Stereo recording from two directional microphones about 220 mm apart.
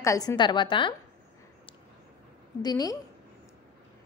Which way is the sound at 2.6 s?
15° left (ahead or behind).